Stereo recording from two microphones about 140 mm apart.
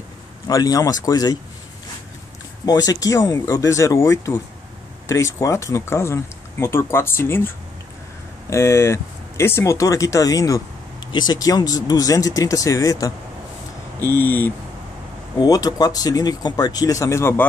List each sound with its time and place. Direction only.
0.5 s speech: 25° left (ahead or behind)
2.6 s speech: 25° left (ahead or behind)
15.3 s speech: 25° left (ahead or behind)